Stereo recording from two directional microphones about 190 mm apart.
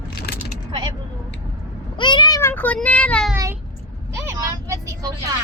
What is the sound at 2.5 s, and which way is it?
Speech, 10° left (ahead or behind).